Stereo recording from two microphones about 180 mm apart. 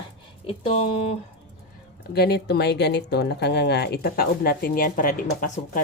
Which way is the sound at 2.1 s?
65° left (ahead or behind).